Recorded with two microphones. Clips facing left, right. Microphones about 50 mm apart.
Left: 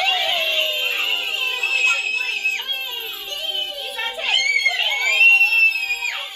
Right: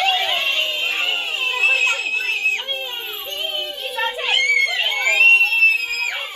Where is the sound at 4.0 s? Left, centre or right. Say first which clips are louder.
Right 2 dB; right.